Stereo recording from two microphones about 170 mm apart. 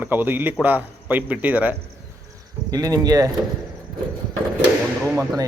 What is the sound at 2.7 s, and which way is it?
Speech, 20° right (ahead or behind).